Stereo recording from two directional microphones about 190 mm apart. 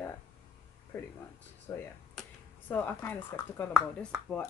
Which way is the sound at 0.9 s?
15° left (ahead or behind).